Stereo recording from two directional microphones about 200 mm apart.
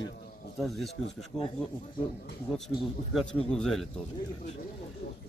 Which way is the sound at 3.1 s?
5° left (ahead or behind).